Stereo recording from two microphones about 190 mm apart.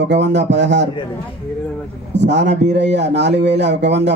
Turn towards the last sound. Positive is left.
turn(degrees=-65)  # may be behind; listen again after turning